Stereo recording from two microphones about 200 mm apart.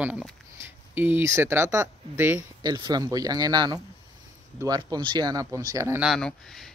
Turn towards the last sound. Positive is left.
turn(degrees=0)  # may be behind; listen again after turning